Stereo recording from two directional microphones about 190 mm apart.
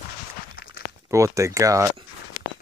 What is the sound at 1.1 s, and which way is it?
Speech, 15° right (ahead or behind).